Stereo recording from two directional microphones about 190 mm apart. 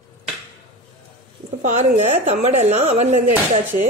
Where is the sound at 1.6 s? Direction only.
40° right (ahead or behind).